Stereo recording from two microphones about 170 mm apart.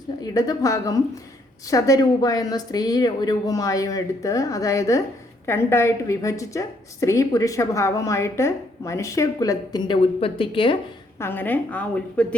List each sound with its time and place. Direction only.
0.2 s a woman's voice: 20° left (ahead or behind)
11.2 s a woman's voice: 10° left (ahead or behind)